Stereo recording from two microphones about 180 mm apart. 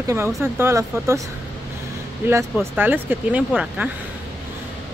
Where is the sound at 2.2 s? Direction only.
10° right (ahead or behind).